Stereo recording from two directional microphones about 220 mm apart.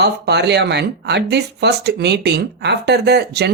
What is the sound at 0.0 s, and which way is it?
Speech, 50° right (ahead or behind).